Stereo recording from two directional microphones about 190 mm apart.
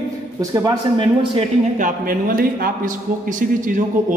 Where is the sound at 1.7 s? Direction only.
45° right (ahead or behind).